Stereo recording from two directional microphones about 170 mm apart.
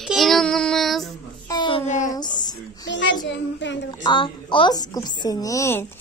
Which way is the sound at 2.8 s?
90° left.